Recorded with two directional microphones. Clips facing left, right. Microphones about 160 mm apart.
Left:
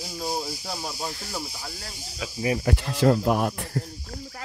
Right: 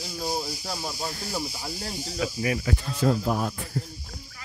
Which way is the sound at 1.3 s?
10° right (ahead or behind).